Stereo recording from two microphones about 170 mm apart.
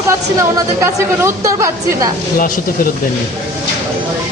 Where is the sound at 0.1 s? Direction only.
15° right (ahead or behind).